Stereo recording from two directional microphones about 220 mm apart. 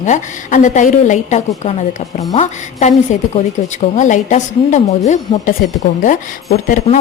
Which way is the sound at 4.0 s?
35° left (ahead or behind).